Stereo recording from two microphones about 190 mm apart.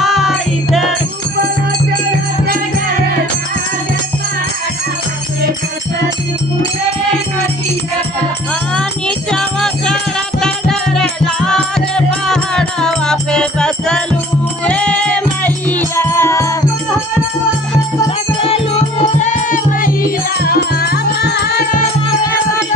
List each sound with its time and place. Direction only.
0.0 s music: centre (ahead or behind)
9.3 s music: 5° left (ahead or behind)
19.1 s music: 40° left (ahead or behind); by 21.5 s 55° left (ahead or behind)